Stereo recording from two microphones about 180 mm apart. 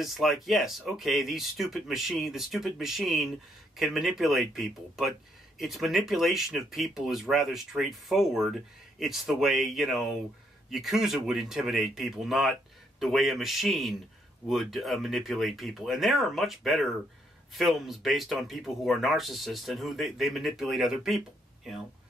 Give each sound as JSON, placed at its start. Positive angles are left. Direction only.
{"t": 0.0, "sound": "speech", "side_deg": 0}